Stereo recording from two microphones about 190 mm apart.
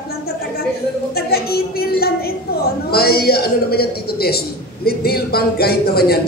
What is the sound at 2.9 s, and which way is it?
Speech, 55° left (ahead or behind).